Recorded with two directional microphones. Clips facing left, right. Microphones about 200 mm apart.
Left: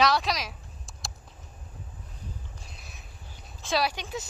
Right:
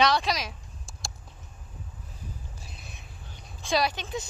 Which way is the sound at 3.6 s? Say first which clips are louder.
Right 1 dB; 5° left (ahead or behind).